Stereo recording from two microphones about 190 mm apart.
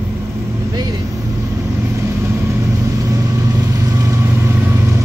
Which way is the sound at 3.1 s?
20° right (ahead or behind).